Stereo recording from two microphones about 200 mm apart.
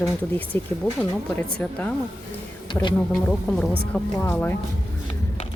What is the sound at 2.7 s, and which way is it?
Speech, 25° left (ahead or behind).